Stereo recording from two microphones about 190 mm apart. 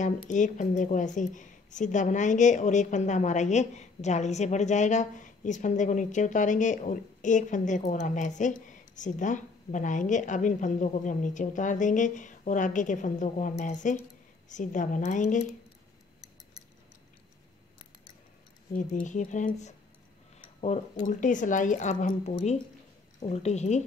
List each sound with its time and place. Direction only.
0.3 s a woman's voice: 40° left (ahead or behind)
18.7 s a woman's voice: 40° left (ahead or behind)
21.0 s a woman's voice: 40° left (ahead or behind)